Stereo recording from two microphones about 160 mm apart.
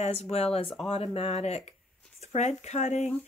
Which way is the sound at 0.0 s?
40° left (ahead or behind).